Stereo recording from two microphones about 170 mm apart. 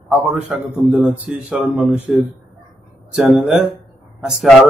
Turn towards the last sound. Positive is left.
turn(degrees=0)  # may be behind; listen again after turning